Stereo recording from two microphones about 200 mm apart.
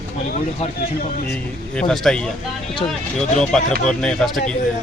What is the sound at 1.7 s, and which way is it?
Speech, 5° left (ahead or behind).